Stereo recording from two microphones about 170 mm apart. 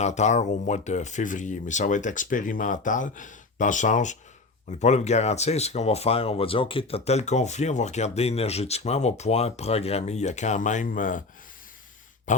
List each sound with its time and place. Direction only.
0.0 s speech: 45° left (ahead or behind)